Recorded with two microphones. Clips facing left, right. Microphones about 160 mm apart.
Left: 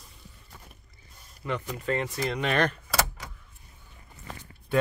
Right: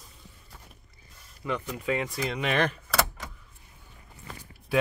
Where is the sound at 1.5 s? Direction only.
5° right (ahead or behind).